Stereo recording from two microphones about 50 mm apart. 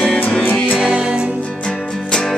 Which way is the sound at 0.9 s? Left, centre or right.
Centre.